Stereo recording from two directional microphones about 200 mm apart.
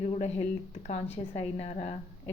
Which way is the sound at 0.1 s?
30° left (ahead or behind).